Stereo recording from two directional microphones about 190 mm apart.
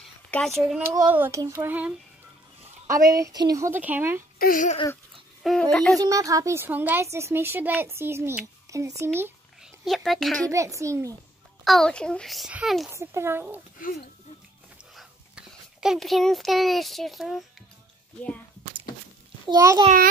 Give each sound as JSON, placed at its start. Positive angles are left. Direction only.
{"t": 0.3, "sound": "a child's voice", "side_deg": 0}
{"t": 1.1, "sound": "a woman's voice", "side_deg": -15}
{"t": 4.4, "sound": "speech", "side_deg": 45}
{"t": 5.4, "sound": "a child's voice", "side_deg": 5}
{"t": 5.9, "sound": "a woman's voice", "side_deg": -15}
{"t": 9.0, "sound": "a sound", "side_deg": -10}
{"t": 9.8, "sound": "a child's voice", "side_deg": 0}
{"t": 10.5, "sound": "a woman's voice", "side_deg": -15}
{"t": 11.6, "sound": "a child's voice", "side_deg": 0}
{"t": 12.9, "sound": "a woman's voice", "side_deg": -15}
{"t": 13.7, "sound": "speech", "side_deg": 45}
{"t": 15.0, "sound": "a child's voice", "side_deg": -5}
{"t": 19.5, "sound": "a woman's voice", "side_deg": -15}